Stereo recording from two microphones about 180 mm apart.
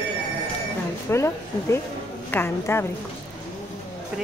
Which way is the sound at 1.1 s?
15° left (ahead or behind).